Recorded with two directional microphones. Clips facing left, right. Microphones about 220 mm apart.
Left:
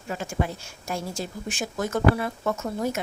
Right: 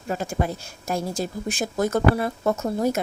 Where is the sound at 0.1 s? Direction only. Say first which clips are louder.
Right 3 dB; 40° right (ahead or behind).